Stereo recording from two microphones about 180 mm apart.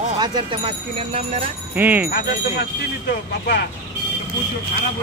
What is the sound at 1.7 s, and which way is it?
Speech, 10° right (ahead or behind).